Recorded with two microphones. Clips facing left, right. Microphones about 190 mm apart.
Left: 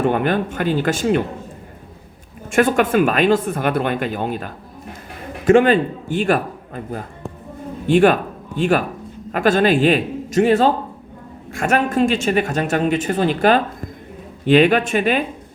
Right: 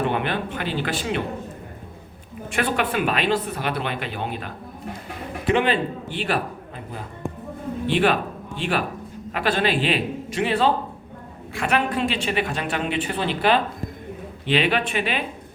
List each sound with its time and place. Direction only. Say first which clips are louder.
0.0 s speech: left 6 dB; 45° left (ahead or behind)
2.5 s speech: left 8 dB; 45° left (ahead or behind)